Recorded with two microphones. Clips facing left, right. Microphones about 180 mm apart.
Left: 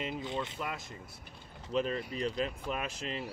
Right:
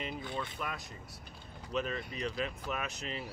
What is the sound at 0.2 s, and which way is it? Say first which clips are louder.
Speech: left 3 dB; 20° left (ahead or behind).